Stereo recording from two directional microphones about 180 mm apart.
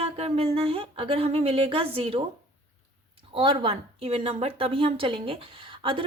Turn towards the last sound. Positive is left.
turn(degrees=-30)  # may be behind; listen again after turning